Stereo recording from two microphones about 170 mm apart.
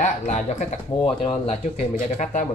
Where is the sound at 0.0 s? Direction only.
40° left (ahead or behind).